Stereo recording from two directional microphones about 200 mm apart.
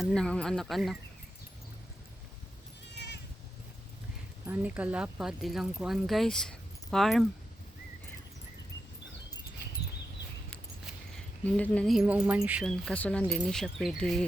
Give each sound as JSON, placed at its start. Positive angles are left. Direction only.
{"t": 0.0, "sound": "speech", "side_deg": 5}
{"t": 2.9, "sound": "cat", "side_deg": 60}
{"t": 4.4, "sound": "speech", "side_deg": -10}
{"t": 11.4, "sound": "speech", "side_deg": 5}